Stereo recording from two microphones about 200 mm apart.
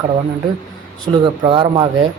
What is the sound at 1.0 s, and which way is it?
Speech, 25° right (ahead or behind).